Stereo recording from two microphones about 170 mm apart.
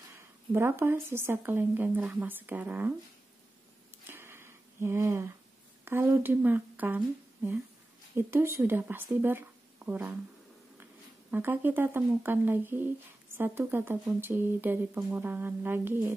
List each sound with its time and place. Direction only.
0.1 s speech: 15° right (ahead or behind)
4.1 s a sound: 15° right (ahead or behind)
5.9 s speech: 15° right (ahead or behind)
8.2 s speech: 15° right (ahead or behind)